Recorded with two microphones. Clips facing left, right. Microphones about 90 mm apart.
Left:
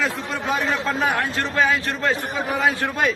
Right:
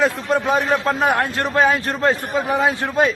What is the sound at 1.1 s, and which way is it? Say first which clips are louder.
Speech: right 4 dB; 50° right (ahead or behind).